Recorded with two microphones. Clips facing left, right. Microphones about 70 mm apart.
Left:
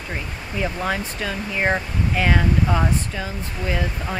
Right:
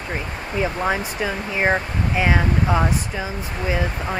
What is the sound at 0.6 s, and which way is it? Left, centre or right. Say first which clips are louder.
Speech: right 2 dB; centre.